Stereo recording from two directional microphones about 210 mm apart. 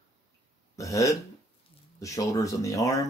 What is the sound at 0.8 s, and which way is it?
Speech, 15° left (ahead or behind).